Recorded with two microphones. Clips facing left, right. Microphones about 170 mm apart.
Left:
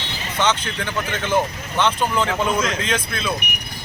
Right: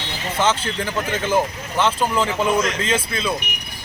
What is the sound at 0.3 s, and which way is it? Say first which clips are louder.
Speech: right 1 dB; 5° right (ahead or behind).